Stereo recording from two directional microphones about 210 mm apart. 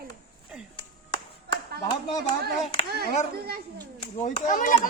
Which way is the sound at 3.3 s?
45° right (ahead or behind).